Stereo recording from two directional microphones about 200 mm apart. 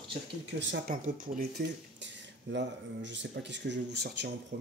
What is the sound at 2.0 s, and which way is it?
Speech, 60° right (ahead or behind).